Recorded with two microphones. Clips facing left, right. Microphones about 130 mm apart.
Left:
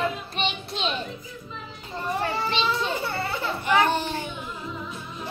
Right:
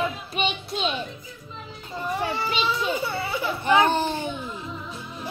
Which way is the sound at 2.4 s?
5° right (ahead or behind).